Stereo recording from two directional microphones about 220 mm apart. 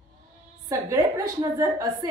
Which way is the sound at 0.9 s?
15° right (ahead or behind).